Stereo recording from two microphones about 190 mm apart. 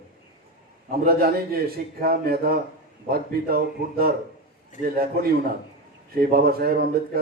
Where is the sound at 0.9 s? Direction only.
55° right (ahead or behind).